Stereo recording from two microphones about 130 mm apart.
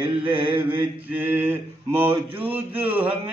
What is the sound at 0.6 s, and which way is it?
Mantra, 15° right (ahead or behind).